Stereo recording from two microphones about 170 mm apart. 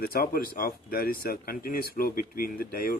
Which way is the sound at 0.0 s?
60° left (ahead or behind).